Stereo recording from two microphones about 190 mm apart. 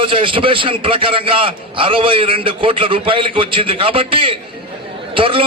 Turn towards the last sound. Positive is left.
turn(degrees=-30)  # may be behind; listen again after turning